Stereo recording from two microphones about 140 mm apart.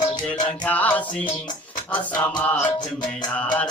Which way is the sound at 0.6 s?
10° left (ahead or behind).